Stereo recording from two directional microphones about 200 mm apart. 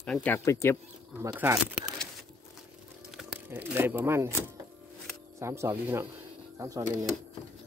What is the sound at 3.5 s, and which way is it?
Speech, 10° right (ahead or behind).